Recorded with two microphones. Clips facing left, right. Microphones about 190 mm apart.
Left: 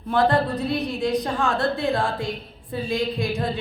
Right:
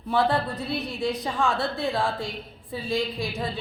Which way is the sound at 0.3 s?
40° left (ahead or behind).